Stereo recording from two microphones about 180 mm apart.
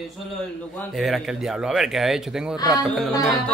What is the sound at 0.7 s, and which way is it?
Speech, centre (ahead or behind).